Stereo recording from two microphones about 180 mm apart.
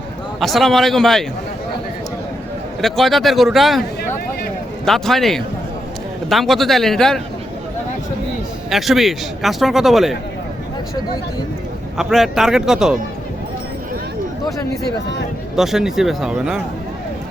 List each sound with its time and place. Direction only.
0.3 s speech: centre (ahead or behind)
2.8 s speech: centre (ahead or behind)
4.9 s speech: centre (ahead or behind)
8.7 s speech: centre (ahead or behind)
11.9 s speech: centre (ahead or behind)
15.5 s speech: centre (ahead or behind)